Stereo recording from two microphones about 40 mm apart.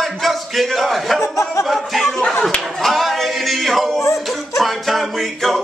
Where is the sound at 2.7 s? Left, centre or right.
Centre.